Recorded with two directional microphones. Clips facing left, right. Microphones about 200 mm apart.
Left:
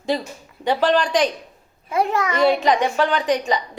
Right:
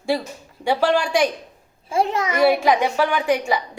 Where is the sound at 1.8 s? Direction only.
25° right (ahead or behind).